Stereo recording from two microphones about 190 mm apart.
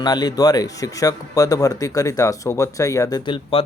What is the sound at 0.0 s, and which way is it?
Speech, 20° left (ahead or behind).